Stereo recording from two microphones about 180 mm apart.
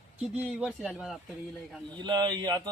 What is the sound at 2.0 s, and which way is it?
Speech, 25° right (ahead or behind).